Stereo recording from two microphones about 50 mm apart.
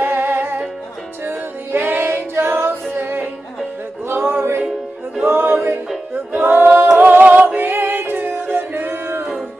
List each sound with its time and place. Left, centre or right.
0.0 s music: right
1.2 s a capella: right
4.1 s music: right
5.2 s a capella: right
7.0 s music: right